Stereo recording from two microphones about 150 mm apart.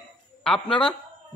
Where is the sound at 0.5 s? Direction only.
35° left (ahead or behind).